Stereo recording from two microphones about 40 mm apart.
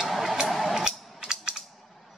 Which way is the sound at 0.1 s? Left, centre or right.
Centre.